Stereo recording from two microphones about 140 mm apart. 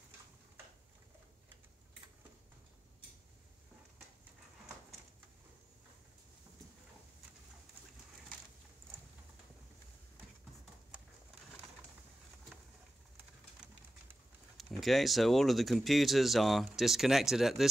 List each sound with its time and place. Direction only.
14.6 s speech: centre (ahead or behind)